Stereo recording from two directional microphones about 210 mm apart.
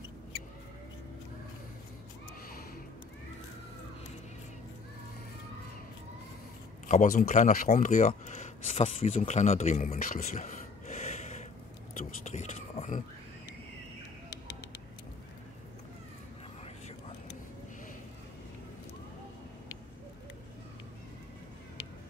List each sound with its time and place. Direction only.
6.9 s speech: 35° left (ahead or behind)